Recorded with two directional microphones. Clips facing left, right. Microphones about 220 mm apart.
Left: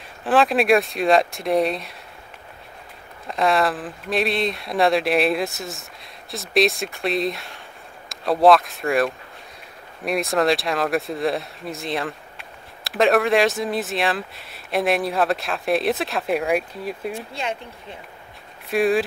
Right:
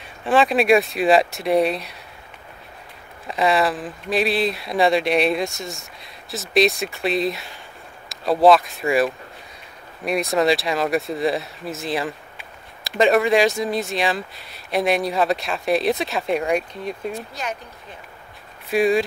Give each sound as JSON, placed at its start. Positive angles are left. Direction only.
{"t": 0.0, "sound": "speech", "side_deg": 0}
{"t": 3.3, "sound": "speech", "side_deg": 0}
{"t": 17.3, "sound": "speech", "side_deg": 25}
{"t": 18.7, "sound": "speech", "side_deg": 0}